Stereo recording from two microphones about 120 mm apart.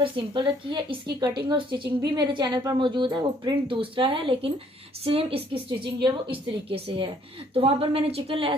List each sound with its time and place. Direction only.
0.0 s a woman's voice: 40° right (ahead or behind)